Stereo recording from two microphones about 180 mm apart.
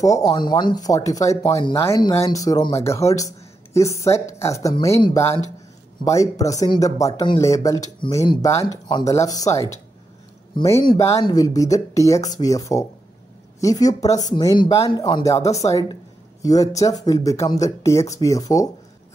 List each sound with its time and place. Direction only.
0.0 s speech: 20° left (ahead or behind)
17.0 s speech: 20° left (ahead or behind)